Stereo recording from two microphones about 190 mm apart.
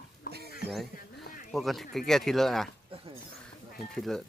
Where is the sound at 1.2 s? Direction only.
45° left (ahead or behind).